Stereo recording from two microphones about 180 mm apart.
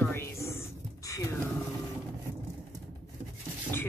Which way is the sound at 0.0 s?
15° left (ahead or behind).